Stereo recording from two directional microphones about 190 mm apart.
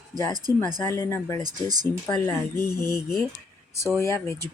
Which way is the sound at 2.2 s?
15° left (ahead or behind).